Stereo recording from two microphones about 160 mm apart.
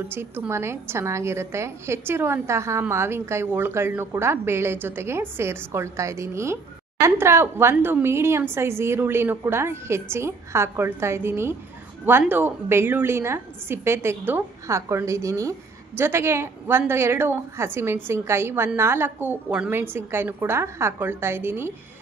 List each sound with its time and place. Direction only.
0.1 s a woman's voice: 15° right (ahead or behind)